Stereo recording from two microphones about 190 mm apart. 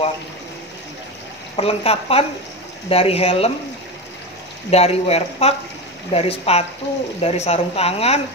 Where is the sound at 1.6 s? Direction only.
30° left (ahead or behind).